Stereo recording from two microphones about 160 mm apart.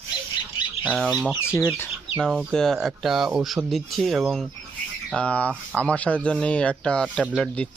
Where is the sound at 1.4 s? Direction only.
15° left (ahead or behind).